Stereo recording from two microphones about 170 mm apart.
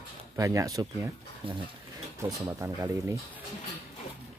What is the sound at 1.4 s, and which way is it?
Speech, 30° right (ahead or behind).